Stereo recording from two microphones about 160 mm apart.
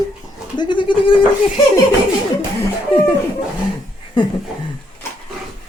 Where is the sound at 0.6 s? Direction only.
30° left (ahead or behind).